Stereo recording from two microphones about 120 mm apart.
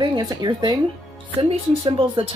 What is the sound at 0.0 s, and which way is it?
Speech, 35° right (ahead or behind).